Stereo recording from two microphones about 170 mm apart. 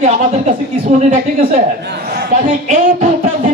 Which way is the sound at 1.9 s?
65° right (ahead or behind).